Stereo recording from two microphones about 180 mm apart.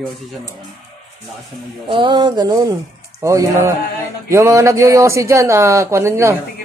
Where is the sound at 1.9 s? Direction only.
25° right (ahead or behind).